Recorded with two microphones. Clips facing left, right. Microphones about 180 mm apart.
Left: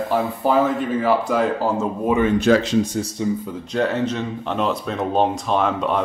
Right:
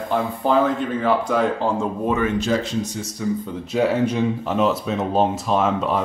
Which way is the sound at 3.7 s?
10° right (ahead or behind).